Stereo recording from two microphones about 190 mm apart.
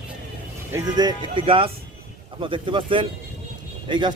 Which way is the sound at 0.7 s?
20° right (ahead or behind).